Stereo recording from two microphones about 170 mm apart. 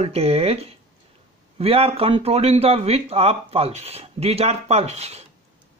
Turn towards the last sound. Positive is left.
turn(degrees=-40)  # may be behind; listen again after turning